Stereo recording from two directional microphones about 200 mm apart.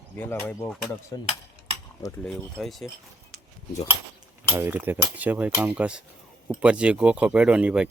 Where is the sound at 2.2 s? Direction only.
Centre (ahead or behind).